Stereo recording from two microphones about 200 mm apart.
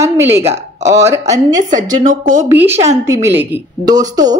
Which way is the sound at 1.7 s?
40° right (ahead or behind).